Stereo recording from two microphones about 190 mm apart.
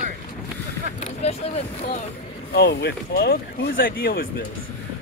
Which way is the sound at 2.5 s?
55° left (ahead or behind).